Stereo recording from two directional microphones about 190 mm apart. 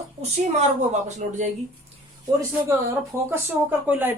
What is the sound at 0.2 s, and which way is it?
A woman's voice, 35° right (ahead or behind).